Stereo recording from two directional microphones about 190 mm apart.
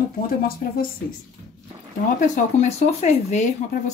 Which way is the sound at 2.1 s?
35° left (ahead or behind).